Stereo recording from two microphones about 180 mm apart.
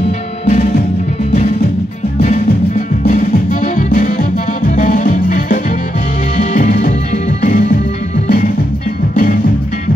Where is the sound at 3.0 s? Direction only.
40° left (ahead or behind).